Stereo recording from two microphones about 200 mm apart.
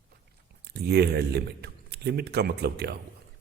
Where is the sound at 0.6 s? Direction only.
55° right (ahead or behind).